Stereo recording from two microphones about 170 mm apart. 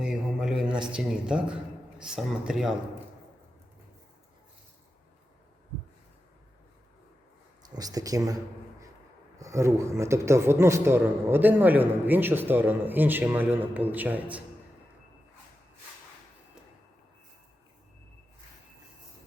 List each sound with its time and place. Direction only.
0.0 s a sound: 5° right (ahead or behind)
2.0 s speech: 5° right (ahead or behind)
7.7 s speech: 20° right (ahead or behind)
9.4 s a man's voice: 15° right (ahead or behind)